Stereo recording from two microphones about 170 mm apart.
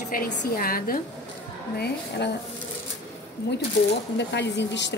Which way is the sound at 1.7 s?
70° left (ahead or behind).